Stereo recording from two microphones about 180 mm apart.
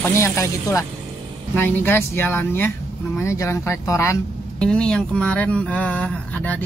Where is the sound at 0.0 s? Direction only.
15° left (ahead or behind).